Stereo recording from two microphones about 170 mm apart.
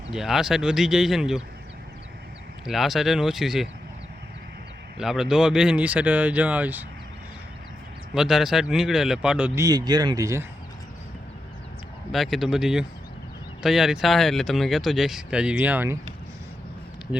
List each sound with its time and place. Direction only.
0.1 s speech: centre (ahead or behind)
2.6 s speech: centre (ahead or behind)
4.9 s speech: centre (ahead or behind)
8.1 s speech: 5° right (ahead or behind)
9.6 s speech: 20° right (ahead or behind)
12.1 s speech: centre (ahead or behind)